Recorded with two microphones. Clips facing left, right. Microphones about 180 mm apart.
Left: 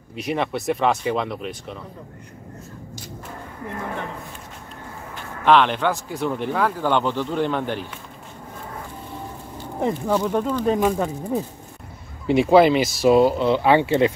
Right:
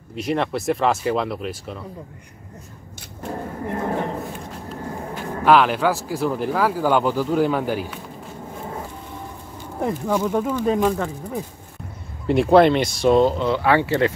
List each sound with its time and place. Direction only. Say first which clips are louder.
0.1 s speech: right 2 dB; centre (ahead or behind)
3.7 s a sound: right 6 dB; 40° right (ahead or behind)
5.4 s speech: right 1 dB; 5° right (ahead or behind)
10.1 s speech: right 1 dB; 10° right (ahead or behind)
10.9 s speech: left 2 dB; 15° left (ahead or behind)
12.3 s speech: even; centre (ahead or behind)
13.5 s speech: left 2 dB; 20° left (ahead or behind)